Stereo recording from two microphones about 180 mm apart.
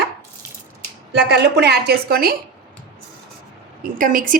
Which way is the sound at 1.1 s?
65° right (ahead or behind).